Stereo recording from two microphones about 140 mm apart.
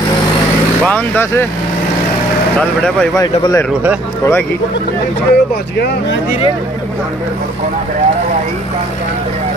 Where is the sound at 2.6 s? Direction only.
5° left (ahead or behind).